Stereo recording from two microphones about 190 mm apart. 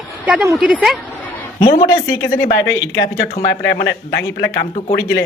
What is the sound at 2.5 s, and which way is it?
A man's voice, 70° left (ahead or behind).